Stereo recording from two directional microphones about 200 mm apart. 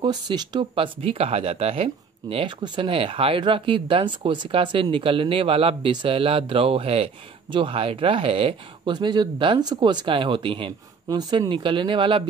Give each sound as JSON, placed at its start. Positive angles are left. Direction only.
{"t": 0.0, "sound": "speech", "side_deg": -20}